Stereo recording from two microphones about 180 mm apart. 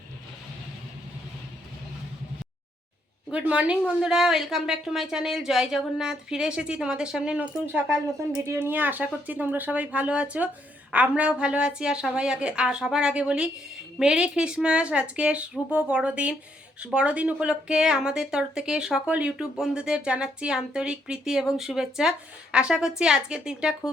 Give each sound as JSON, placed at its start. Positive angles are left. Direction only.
{"t": 3.3, "sound": "speech", "side_deg": -10}